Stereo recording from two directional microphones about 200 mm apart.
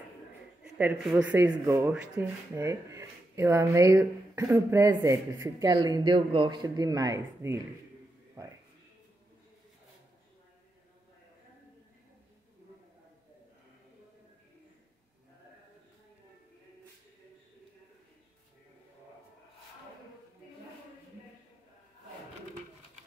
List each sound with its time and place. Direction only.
0.7 s speech: 10° right (ahead or behind)